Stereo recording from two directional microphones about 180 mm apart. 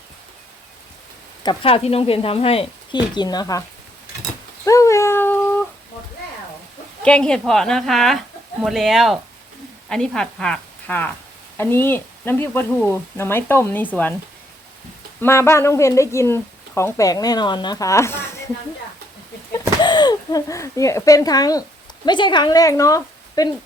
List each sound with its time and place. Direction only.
1.5 s speech: 30° left (ahead or behind)
4.6 s a sound: 15° left (ahead or behind)
7.0 s a woman's voice: 5° left (ahead or behind)
15.2 s speech: 15° left (ahead or behind)
19.5 s speech: 25° left (ahead or behind)